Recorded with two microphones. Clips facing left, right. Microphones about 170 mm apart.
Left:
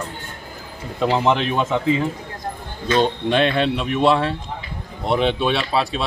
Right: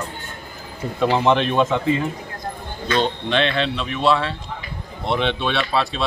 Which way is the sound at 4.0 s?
15° left (ahead or behind).